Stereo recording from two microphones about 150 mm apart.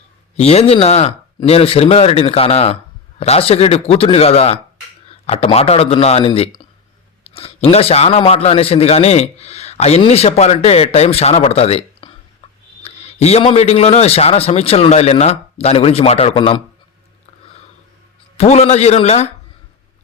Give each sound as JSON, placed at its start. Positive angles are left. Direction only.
{"t": 0.3, "sound": "a man's voice", "side_deg": 45}
{"t": 18.3, "sound": "a man's voice", "side_deg": 45}